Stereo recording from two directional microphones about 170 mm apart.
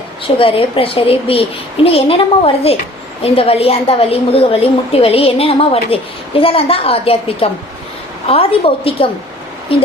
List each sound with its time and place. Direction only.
0.3 s a woman's voice: 35° left (ahead or behind)